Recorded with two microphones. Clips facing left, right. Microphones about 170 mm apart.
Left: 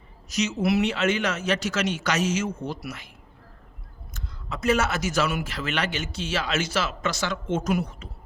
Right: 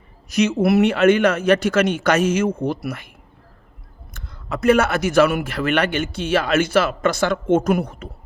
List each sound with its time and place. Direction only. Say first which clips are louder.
0.3 s speech: right 7 dB; 60° right (ahead or behind)
4.1 s speech: right 7 dB; 60° right (ahead or behind)